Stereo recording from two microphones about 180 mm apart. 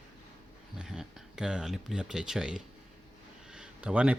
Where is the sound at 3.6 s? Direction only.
5° right (ahead or behind).